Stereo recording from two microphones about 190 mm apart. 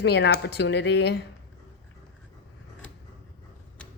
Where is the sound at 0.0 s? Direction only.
60° left (ahead or behind).